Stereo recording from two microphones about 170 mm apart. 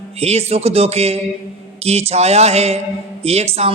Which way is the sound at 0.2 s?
35° right (ahead or behind).